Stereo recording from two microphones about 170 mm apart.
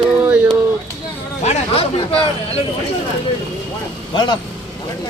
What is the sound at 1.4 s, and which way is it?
Speech, 35° left (ahead or behind).